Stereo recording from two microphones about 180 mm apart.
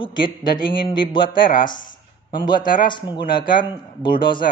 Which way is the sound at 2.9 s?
25° left (ahead or behind).